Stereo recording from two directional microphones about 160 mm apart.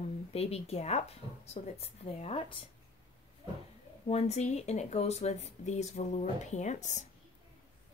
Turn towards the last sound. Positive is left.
turn(degrees=50)  # may be behind; listen again after turning